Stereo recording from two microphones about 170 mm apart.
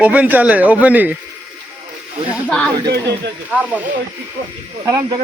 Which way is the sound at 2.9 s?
80° right.